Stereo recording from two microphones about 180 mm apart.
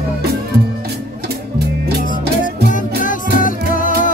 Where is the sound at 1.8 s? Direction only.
60° right (ahead or behind).